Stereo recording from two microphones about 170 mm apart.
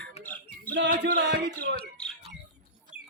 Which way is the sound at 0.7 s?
90° right.